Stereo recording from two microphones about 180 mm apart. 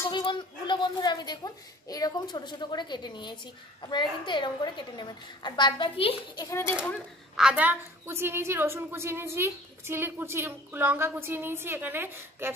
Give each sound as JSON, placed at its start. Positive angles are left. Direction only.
{"t": 0.1, "sound": "a child's voice", "side_deg": 25}
{"t": 6.4, "sound": "speech", "side_deg": 15}
{"t": 7.3, "sound": "a woman's voice", "side_deg": -5}